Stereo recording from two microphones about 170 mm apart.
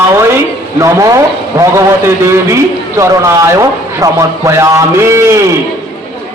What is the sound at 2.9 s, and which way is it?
A man's voice, 15° right (ahead or behind).